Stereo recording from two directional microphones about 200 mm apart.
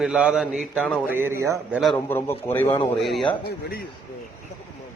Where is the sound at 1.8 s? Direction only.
5° left (ahead or behind).